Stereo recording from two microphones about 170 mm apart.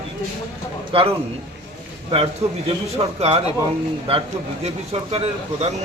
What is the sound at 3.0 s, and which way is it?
Speech, 30° right (ahead or behind).